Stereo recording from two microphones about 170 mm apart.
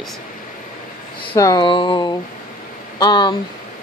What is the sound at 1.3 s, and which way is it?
Speech, 20° left (ahead or behind).